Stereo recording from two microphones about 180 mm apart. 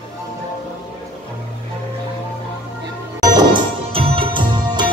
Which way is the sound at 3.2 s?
25° right (ahead or behind).